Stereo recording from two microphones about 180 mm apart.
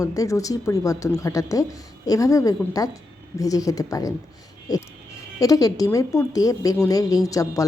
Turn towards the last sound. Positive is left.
turn(degrees=20)  # may be behind; listen again after turning